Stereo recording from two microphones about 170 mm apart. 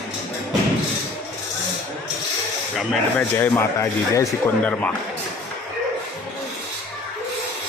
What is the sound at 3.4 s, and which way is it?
Speech, 15° left (ahead or behind).